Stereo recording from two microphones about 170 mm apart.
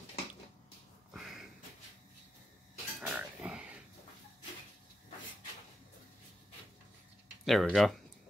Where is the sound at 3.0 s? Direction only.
5° right (ahead or behind).